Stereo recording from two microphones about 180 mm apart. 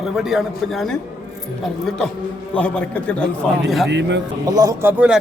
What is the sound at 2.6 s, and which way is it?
A man's voice, 5° left (ahead or behind).